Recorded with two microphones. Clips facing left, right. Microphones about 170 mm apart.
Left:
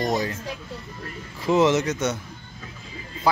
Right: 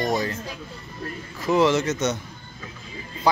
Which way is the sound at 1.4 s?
25° left (ahead or behind).